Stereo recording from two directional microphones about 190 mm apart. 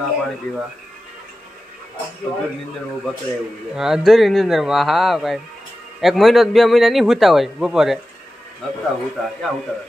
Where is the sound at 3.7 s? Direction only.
Centre (ahead or behind).